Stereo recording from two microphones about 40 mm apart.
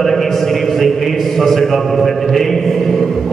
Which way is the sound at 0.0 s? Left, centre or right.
Centre.